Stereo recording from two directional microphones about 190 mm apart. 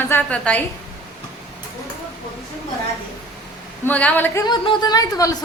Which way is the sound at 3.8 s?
5° left (ahead or behind).